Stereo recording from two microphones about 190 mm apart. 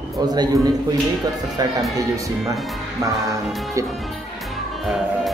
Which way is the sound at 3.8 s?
15° right (ahead or behind).